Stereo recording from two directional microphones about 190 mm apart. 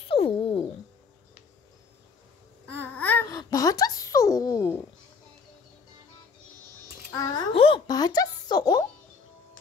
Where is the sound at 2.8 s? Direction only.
10° left (ahead or behind).